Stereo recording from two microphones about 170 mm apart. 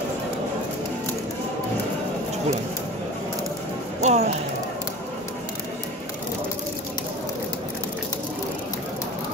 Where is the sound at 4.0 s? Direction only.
40° right (ahead or behind).